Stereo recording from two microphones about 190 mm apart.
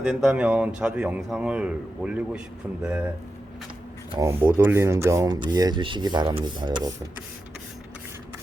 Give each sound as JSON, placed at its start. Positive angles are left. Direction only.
{"t": 0.0, "sound": "speech", "side_deg": 0}
{"t": 4.1, "sound": "speech", "side_deg": -15}